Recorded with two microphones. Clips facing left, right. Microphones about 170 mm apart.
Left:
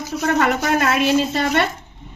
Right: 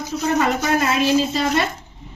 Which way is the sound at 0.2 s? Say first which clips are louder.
Left 1 dB; 55° left (ahead or behind).